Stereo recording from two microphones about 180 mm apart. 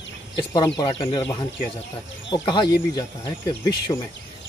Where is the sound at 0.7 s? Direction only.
25° left (ahead or behind).